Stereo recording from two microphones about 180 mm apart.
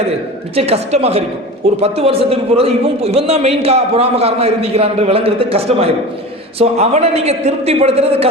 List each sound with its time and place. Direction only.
0.5 s a man's voice: 35° right (ahead or behind)